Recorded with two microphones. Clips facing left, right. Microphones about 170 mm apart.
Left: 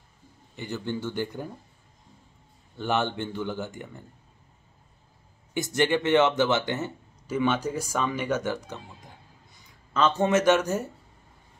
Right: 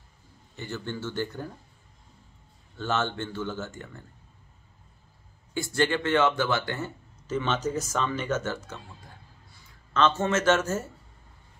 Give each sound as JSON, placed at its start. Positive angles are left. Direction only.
{"t": 0.6, "sound": "speech", "side_deg": 15}
{"t": 2.8, "sound": "speech", "side_deg": 15}
{"t": 5.5, "sound": "speech", "side_deg": 20}